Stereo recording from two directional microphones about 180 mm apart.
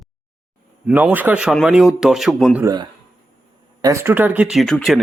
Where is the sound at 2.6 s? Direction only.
25° right (ahead or behind).